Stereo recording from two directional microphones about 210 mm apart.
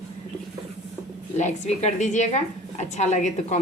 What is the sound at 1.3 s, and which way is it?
A woman's voice, 35° left (ahead or behind).